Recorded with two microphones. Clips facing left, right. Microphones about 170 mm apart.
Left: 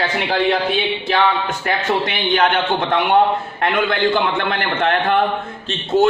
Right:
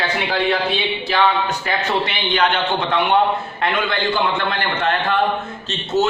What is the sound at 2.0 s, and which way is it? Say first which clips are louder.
A man's voice: left 2 dB; 50° left (ahead or behind).